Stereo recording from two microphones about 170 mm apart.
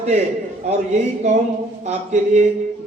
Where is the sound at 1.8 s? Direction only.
45° right (ahead or behind).